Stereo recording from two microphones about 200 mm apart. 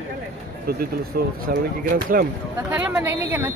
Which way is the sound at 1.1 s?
50° right (ahead or behind).